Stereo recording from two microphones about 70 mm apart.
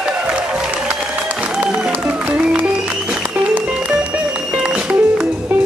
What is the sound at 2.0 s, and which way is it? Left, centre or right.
Music, centre.